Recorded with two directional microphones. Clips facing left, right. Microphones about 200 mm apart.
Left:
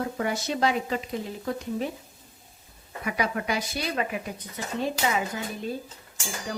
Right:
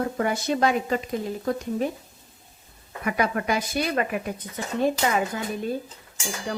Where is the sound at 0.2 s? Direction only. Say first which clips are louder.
Right 3 dB; 50° right (ahead or behind).